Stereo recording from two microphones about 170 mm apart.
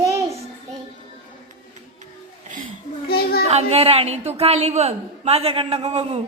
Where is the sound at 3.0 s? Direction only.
65° left (ahead or behind).